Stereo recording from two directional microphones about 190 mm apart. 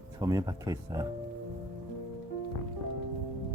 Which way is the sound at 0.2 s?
20° right (ahead or behind).